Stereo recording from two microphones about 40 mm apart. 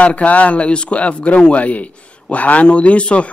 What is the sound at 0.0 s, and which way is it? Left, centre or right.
Speech, left.